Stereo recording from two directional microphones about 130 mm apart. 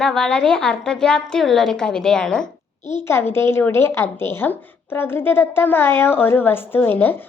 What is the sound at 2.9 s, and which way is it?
Speech, 20° left (ahead or behind).